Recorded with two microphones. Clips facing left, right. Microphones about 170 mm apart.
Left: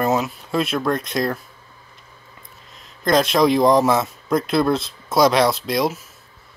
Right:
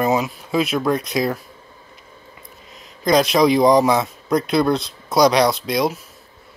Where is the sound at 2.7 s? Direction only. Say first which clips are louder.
Right 1 dB; centre (ahead or behind).